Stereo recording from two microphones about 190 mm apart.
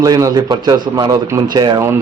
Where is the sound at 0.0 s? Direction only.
20° right (ahead or behind).